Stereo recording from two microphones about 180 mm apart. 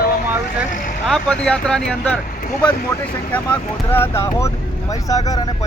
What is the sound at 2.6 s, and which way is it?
Speech, 25° left (ahead or behind).